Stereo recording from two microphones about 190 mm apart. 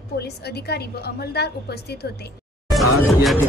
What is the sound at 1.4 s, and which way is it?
Speech, 60° left (ahead or behind).